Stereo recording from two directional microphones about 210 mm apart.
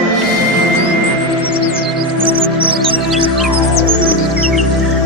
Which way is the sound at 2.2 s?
25° right (ahead or behind).